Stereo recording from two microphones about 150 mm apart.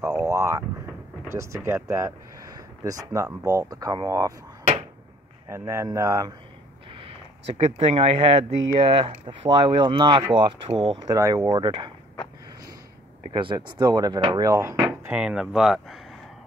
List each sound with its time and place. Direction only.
0.2 s speech: 20° right (ahead or behind)
5.5 s speech: 20° right (ahead or behind)
6.9 s speech: 40° right (ahead or behind)
11.1 s speech: 25° right (ahead or behind)
13.3 s speech: 30° right (ahead or behind)
15.0 s speech: 5° right (ahead or behind)